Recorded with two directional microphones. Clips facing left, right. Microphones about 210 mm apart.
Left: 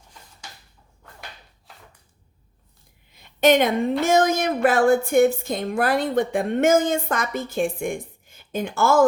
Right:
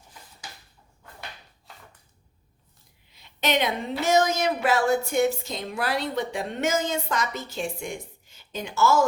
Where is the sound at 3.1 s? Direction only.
50° left (ahead or behind).